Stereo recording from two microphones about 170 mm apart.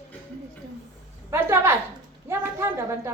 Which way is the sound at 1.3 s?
15° right (ahead or behind).